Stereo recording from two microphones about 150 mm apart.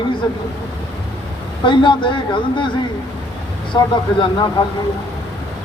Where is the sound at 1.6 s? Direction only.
35° left (ahead or behind).